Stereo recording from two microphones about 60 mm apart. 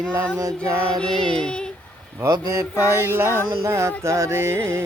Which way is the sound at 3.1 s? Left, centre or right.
Right.